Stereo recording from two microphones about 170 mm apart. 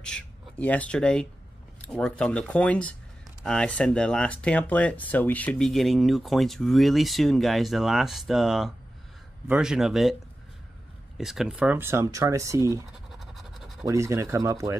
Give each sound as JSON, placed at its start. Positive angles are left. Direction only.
{"t": 0.0, "sound": "speech", "side_deg": 5}
{"t": 11.1, "sound": "speech", "side_deg": 0}
{"t": 13.1, "sound": "a sound", "side_deg": 0}
{"t": 13.8, "sound": "speech", "side_deg": -15}